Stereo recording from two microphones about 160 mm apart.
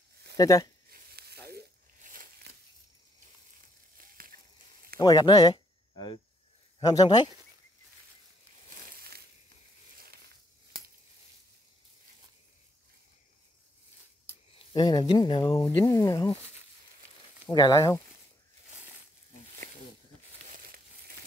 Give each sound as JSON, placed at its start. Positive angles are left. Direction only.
{"t": 0.4, "sound": "speech", "side_deg": 20}
{"t": 0.8, "sound": "a sound", "side_deg": -80}
{"t": 4.0, "sound": "crushing", "side_deg": -65}
{"t": 5.0, "sound": "speech", "side_deg": 25}
{"t": 8.9, "sound": "a sound", "side_deg": -70}
{"t": 14.7, "sound": "speech", "side_deg": 25}
{"t": 17.5, "sound": "speech", "side_deg": 25}